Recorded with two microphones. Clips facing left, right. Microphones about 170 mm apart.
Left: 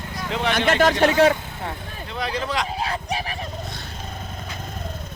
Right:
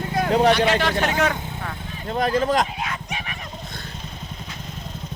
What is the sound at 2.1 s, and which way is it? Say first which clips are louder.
Speech: right 6 dB; 45° right (ahead or behind).